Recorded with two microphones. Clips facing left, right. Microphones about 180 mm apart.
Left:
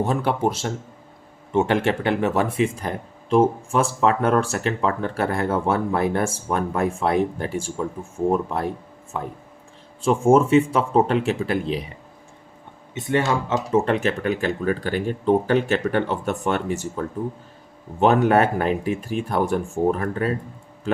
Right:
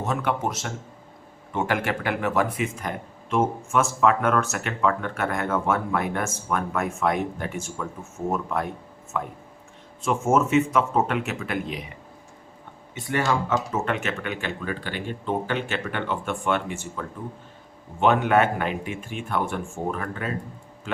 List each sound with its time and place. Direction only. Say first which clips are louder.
0.0 s speech: left 5 dB; 30° left (ahead or behind)
10.0 s speech: left 5 dB; 30° left (ahead or behind)
12.9 s speech: left 3 dB; 20° left (ahead or behind); by 20.3 s 40° left (ahead or behind)